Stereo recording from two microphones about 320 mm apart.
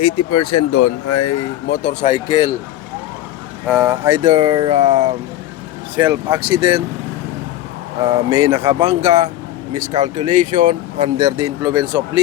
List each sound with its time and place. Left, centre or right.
0.2 s speech: left
1.6 s speech: left
3.7 s speech: centre
4.2 s speech: centre
8.0 s speech: centre